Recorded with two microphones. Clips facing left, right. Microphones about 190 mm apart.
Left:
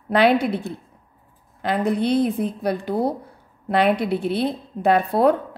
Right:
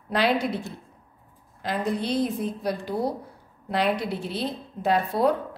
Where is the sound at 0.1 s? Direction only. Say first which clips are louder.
Left 6 dB; 60° left (ahead or behind).